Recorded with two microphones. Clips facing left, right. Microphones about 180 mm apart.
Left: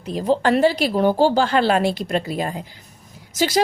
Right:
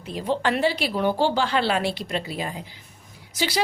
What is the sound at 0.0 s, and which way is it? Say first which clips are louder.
A woman's voice: left 6 dB; 40° left (ahead or behind).